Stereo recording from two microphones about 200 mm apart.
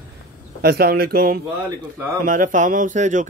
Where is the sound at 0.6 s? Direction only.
50° right (ahead or behind).